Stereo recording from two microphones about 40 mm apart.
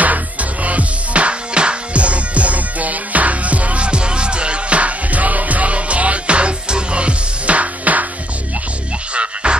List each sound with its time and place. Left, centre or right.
0.0 s music: right
9.1 s music: right